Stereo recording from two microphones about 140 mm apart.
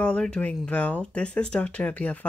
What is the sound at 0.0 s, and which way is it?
Speech, 5° left (ahead or behind).